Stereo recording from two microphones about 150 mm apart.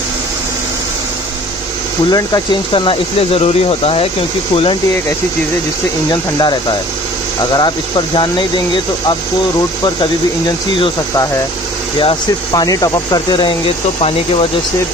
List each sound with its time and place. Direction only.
2.0 s speech: 25° left (ahead or behind)
7.5 s speech: 30° left (ahead or behind)
12.0 s speech: 35° left (ahead or behind)
12.6 s speech: 25° left (ahead or behind); by 14.5 s 40° left (ahead or behind)